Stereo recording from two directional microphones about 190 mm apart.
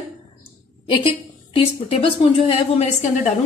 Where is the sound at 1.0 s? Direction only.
30° left (ahead or behind).